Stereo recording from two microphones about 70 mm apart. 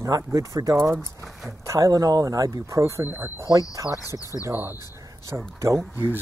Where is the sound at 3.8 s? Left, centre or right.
Left.